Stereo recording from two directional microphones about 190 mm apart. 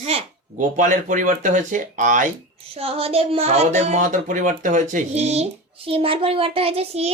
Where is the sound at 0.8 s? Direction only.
45° right (ahead or behind).